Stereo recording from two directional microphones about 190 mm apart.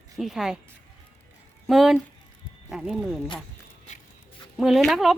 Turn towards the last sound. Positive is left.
turn(degrees=0)  # may be behind; listen again after turning